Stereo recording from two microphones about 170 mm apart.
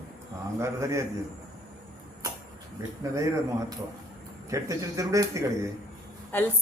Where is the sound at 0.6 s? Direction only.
15° right (ahead or behind).